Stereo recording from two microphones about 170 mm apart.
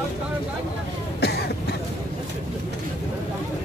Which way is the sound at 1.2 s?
75° left (ahead or behind).